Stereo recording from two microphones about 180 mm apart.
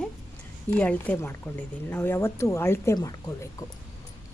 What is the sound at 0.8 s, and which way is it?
Speech, 10° left (ahead or behind).